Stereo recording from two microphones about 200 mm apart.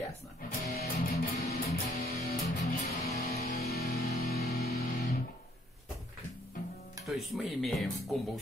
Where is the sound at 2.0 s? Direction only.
40° left (ahead or behind).